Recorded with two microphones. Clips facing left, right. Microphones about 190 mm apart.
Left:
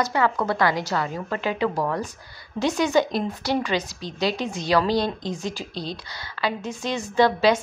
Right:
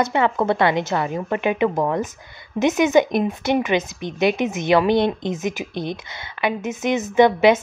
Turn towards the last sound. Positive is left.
turn(degrees=-20)  # may be behind; listen again after turning